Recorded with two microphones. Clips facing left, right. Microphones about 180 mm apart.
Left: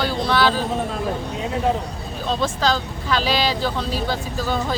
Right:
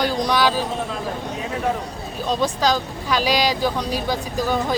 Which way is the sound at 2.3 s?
15° right (ahead or behind).